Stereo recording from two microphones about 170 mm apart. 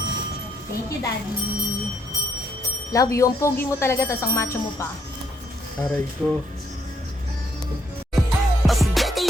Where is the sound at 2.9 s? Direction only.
20° left (ahead or behind).